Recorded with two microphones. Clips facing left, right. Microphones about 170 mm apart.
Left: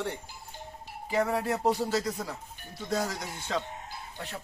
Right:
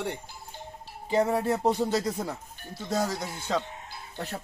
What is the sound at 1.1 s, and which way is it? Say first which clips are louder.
Speech: right 3 dB; 25° right (ahead or behind).